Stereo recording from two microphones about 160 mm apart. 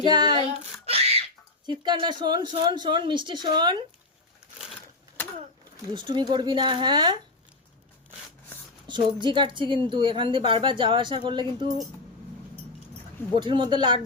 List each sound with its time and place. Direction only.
0.1 s child singing: 25° right (ahead or behind)
0.9 s a sound: 40° right (ahead or behind)
1.6 s speech: 25° right (ahead or behind)
5.9 s speech: 30° right (ahead or behind)
8.9 s a woman's voice: 30° right (ahead or behind)
13.3 s speech: 30° right (ahead or behind)